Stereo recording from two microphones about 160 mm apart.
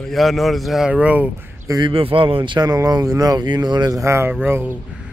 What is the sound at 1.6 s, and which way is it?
Speech, 20° right (ahead or behind).